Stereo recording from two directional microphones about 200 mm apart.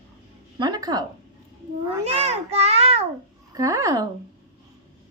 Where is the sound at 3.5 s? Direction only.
15° right (ahead or behind).